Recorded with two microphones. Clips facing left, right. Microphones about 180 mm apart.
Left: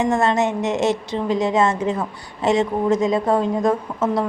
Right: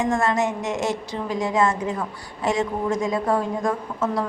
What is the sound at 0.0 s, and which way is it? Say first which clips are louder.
A woman's voice: left 3 dB; 25° left (ahead or behind).